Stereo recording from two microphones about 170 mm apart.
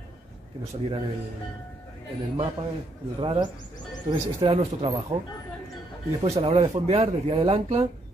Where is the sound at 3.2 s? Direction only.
30° right (ahead or behind).